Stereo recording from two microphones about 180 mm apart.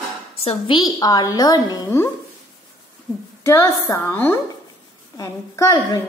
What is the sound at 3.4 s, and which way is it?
A woman's voice, 15° left (ahead or behind).